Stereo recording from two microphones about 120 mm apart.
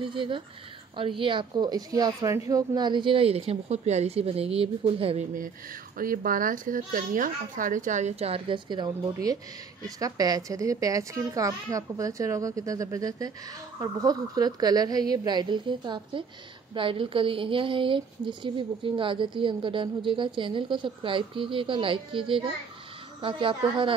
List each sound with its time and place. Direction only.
0.0 s speech: 45° right (ahead or behind)
6.5 s a child's voice: 90° right; by 23.4 s 45° right (ahead or behind)